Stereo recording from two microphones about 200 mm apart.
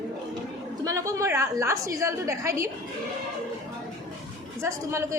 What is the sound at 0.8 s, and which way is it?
Speech, 15° right (ahead or behind).